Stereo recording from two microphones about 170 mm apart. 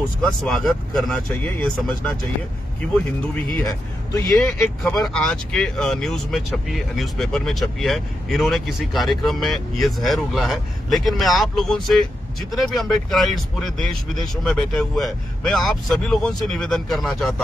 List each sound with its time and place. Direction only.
0.2 s speech: centre (ahead or behind)
3.6 s speech: 20° left (ahead or behind)
4.4 s speech: 10° left (ahead or behind)